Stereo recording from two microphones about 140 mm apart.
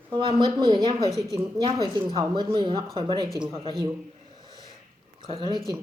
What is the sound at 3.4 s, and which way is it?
Speech, 40° right (ahead or behind).